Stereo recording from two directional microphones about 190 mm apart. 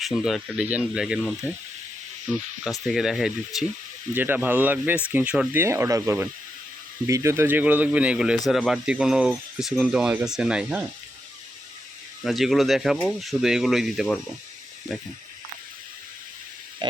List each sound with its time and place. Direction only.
0.0 s speech: centre (ahead or behind)
2.8 s speech: centre (ahead or behind)
12.2 s speech: centre (ahead or behind)
16.8 s a sound: 25° right (ahead or behind)